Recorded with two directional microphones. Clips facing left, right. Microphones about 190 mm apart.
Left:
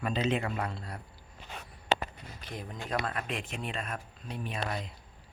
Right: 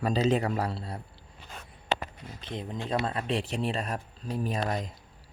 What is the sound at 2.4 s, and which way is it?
Speech, 25° right (ahead or behind).